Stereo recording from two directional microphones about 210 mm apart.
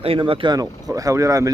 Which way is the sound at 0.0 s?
25° right (ahead or behind).